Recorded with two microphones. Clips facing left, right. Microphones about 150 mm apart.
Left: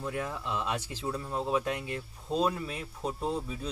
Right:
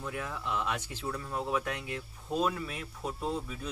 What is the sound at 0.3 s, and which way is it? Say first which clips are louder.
Speech: left 1 dB; 20° left (ahead or behind).